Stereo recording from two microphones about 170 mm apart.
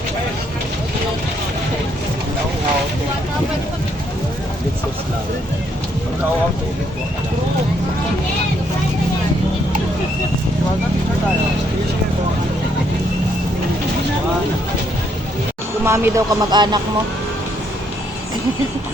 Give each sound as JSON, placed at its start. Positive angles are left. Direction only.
{"t": 15.8, "sound": "speech", "side_deg": -15}